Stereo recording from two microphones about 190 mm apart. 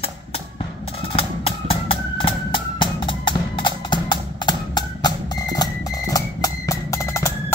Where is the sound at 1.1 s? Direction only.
30° left (ahead or behind).